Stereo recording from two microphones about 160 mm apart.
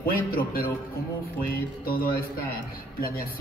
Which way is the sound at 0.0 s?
70° left (ahead or behind).